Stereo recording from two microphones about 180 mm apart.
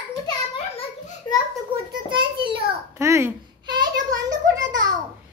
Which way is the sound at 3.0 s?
15° right (ahead or behind).